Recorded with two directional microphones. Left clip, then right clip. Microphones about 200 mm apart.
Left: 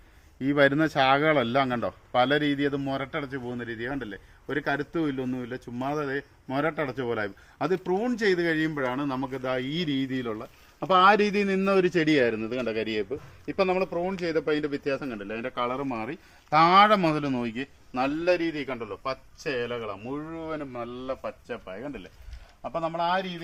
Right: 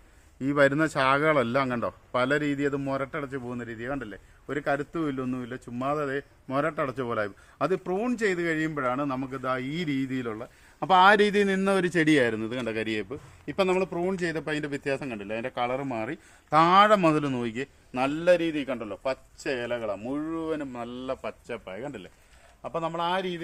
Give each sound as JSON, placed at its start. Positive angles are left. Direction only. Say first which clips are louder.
{"t": 0.4, "sound": "a man's voice", "louder": "left 1 dB", "side_deg": -10}
{"t": 10.8, "sound": "a man's voice", "louder": "right 1 dB", "side_deg": -30}
{"t": 16.5, "sound": "a man's voice", "louder": "left 1 dB", "side_deg": -20}